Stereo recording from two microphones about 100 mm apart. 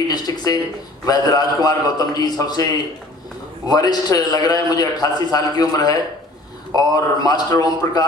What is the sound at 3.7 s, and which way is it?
A man's voice, 40° left (ahead or behind).